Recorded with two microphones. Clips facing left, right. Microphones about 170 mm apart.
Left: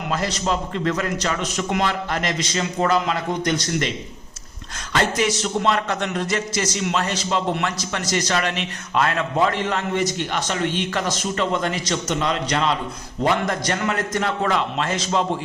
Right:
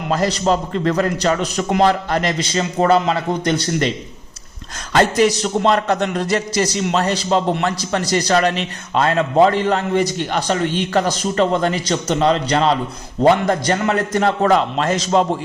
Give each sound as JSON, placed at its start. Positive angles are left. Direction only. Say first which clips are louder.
{"t": 0.1, "sound": "a man's voice", "louder": "right 7 dB", "side_deg": -40}
{"t": 4.9, "sound": "a man's voice", "louder": "right 6 dB", "side_deg": -35}